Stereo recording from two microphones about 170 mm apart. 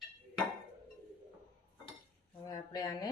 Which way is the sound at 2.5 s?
25° left (ahead or behind).